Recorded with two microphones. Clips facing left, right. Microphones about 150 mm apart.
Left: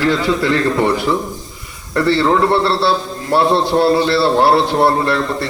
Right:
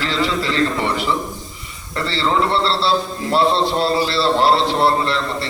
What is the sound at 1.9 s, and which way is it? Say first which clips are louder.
A man's voice: left 6 dB; 55° left (ahead or behind).